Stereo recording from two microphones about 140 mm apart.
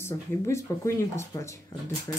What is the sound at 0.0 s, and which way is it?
Speech, 20° left (ahead or behind).